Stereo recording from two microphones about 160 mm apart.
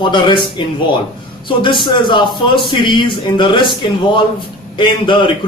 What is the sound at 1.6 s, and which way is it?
A man's voice, 30° left (ahead or behind).